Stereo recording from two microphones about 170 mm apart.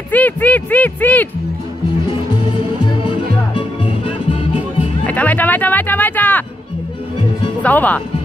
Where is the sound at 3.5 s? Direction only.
30° left (ahead or behind).